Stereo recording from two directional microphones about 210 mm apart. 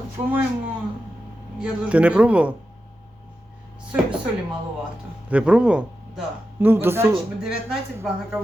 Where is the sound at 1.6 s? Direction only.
5° right (ahead or behind).